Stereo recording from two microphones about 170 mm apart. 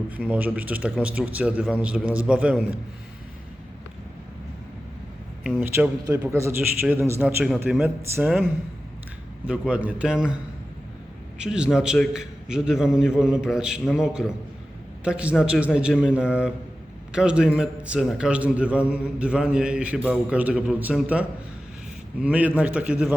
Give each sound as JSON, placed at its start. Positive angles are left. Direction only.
{"t": 0.3, "sound": "a man's voice", "side_deg": -10}
{"t": 5.4, "sound": "a sound", "side_deg": 0}
{"t": 5.6, "sound": "a man's voice", "side_deg": -15}
{"t": 6.8, "sound": "a man's voice", "side_deg": -5}
{"t": 9.5, "sound": "a man's voice", "side_deg": -5}
{"t": 11.3, "sound": "a man's voice", "side_deg": -5}